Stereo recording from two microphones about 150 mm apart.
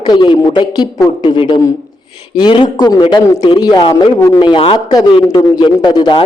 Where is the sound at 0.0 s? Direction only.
30° left (ahead or behind).